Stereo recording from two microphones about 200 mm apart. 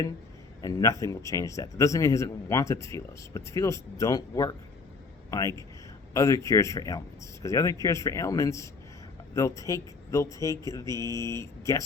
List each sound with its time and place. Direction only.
0.6 s a man's voice: 15° left (ahead or behind)